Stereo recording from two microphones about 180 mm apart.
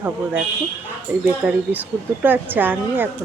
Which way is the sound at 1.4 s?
10° right (ahead or behind).